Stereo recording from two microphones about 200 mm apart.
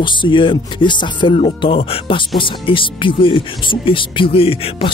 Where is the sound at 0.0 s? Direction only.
25° left (ahead or behind).